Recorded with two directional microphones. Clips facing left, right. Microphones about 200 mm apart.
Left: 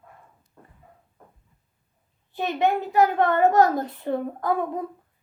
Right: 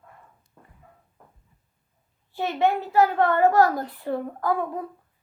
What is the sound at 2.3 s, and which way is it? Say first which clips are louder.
A woman's voice: even; 20° left (ahead or behind).